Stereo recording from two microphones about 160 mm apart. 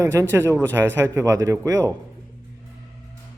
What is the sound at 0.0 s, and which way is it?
A man's voice, 20° right (ahead or behind).